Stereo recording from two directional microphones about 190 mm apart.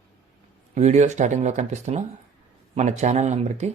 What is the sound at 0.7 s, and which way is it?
Speech, 40° right (ahead or behind).